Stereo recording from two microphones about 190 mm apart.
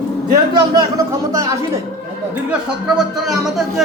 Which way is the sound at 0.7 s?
20° right (ahead or behind).